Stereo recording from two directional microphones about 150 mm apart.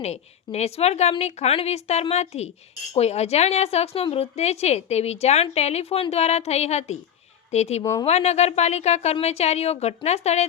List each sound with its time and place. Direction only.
0.0 s a woman's voice: 45° left (ahead or behind)